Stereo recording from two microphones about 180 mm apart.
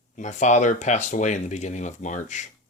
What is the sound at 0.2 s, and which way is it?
Speech, 40° left (ahead or behind).